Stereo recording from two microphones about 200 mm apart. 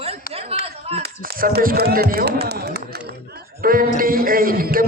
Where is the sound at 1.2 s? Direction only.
50° right (ahead or behind).